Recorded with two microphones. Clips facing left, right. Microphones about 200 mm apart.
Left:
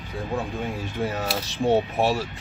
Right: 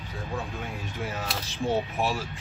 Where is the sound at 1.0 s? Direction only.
35° left (ahead or behind).